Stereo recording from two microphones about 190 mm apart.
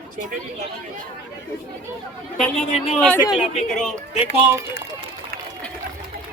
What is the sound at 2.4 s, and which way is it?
Speech, centre (ahead or behind).